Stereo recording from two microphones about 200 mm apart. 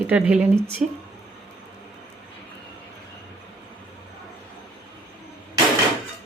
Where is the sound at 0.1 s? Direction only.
5° right (ahead or behind).